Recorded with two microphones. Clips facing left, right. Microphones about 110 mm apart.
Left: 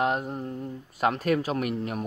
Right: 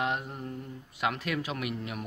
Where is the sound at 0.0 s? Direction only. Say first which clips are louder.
Left 5 dB; 40° left (ahead or behind).